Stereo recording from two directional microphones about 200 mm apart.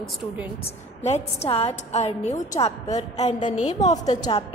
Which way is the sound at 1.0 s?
30° left (ahead or behind).